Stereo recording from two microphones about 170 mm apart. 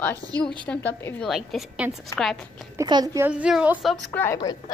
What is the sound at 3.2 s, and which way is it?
Speech, 5° right (ahead or behind).